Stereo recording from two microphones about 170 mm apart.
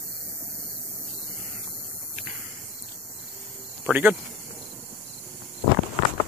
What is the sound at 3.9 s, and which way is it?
Speech, 10° right (ahead or behind).